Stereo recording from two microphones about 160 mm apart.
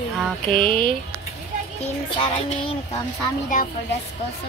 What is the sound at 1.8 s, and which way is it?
A child's voice, 35° left (ahead or behind).